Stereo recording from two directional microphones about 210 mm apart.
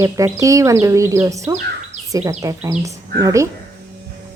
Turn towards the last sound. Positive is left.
turn(degrees=-15)  # may be behind; listen again after turning